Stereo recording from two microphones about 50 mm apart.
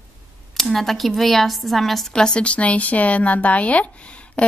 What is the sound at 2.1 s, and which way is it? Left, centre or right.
Speech, centre.